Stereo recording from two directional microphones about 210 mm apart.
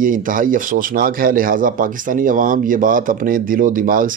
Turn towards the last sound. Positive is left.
turn(degrees=-40)  # may be behind; listen again after turning